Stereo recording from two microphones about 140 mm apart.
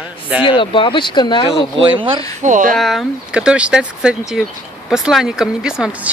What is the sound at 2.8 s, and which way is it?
Speech, centre (ahead or behind).